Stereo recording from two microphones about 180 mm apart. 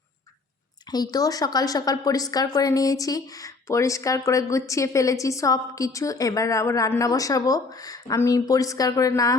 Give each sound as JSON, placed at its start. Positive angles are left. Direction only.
{"t": 0.9, "sound": "a woman's voice", "side_deg": 20}